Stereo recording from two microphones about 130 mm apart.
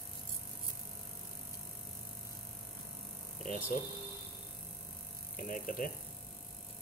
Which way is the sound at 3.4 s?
75° left (ahead or behind).